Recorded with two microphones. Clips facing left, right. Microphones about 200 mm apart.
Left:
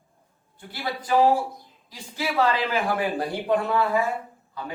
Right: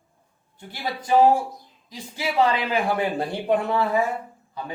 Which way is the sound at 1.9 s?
20° right (ahead or behind).